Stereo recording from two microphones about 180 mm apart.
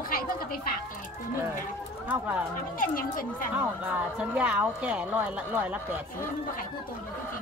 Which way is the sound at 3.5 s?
10° right (ahead or behind).